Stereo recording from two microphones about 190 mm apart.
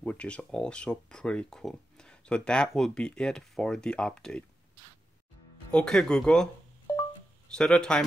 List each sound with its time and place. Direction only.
0.0 s speech: 5° left (ahead or behind)
5.7 s speech: 5° left (ahead or behind)
6.9 s a sound: 20° left (ahead or behind)
7.5 s speech: 5° left (ahead or behind)